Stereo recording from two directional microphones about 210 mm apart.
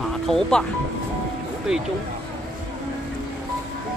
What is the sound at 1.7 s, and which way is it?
Speech, 5° right (ahead or behind).